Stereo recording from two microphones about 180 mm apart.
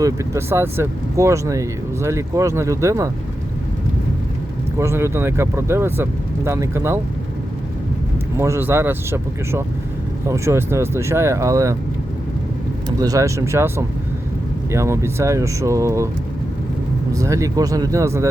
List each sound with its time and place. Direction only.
0.0 s speech: 15° right (ahead or behind)
4.8 s speech: 15° right (ahead or behind)
8.4 s speech: 15° right (ahead or behind)
13.0 s speech: 20° right (ahead or behind)
17.1 s speech: 15° right (ahead or behind)